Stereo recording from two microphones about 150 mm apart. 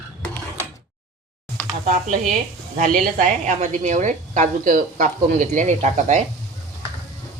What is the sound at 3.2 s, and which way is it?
A woman's voice, 55° right (ahead or behind).